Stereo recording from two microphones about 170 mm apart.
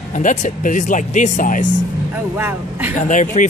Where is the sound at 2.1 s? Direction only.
10° right (ahead or behind).